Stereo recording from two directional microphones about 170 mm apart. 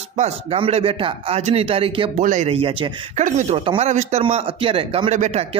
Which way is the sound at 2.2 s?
45° right (ahead or behind).